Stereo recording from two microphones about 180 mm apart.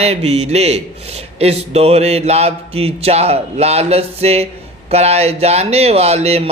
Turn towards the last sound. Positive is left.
turn(degrees=-35)  # may be behind; listen again after turning